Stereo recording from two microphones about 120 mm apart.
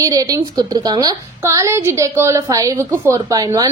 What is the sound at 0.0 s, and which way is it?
A woman's voice, 30° right (ahead or behind).